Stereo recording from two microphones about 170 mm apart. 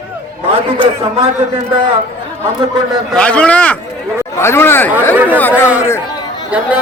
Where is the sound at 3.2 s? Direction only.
5° left (ahead or behind).